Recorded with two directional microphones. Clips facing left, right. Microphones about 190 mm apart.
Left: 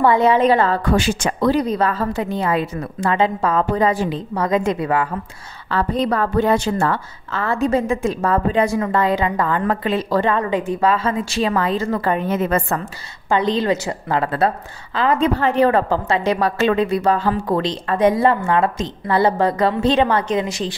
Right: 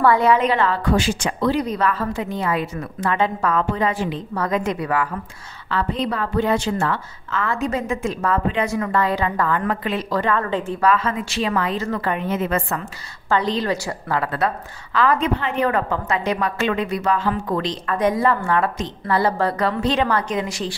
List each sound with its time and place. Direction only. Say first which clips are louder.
0.0 s a woman's voice: left 2 dB; 20° left (ahead or behind)
3.7 s a woman's voice: left 4 dB; 40° left (ahead or behind)
4.3 s a woman's voice: left 4 dB; 20° left (ahead or behind)
5.7 s a woman's voice: left 4 dB; 40° left (ahead or behind); by 9.6 s 20° left (ahead or behind)
9.7 s a woman's voice: left 4 dB; 30° left (ahead or behind)
10.3 s a woman's voice: left 2 dB; 15° left (ahead or behind)
10.9 s a woman's voice: right 3 dB; 30° left (ahead or behind)
13.3 s a woman's voice: left 3 dB; 20° left (ahead or behind)